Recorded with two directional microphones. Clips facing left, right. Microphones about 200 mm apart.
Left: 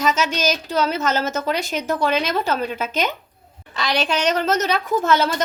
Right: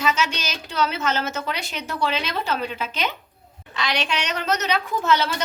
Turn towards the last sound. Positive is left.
turn(degrees=50)  # may be behind; listen again after turning